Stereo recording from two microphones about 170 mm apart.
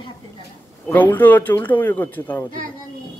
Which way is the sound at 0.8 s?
10° left (ahead or behind).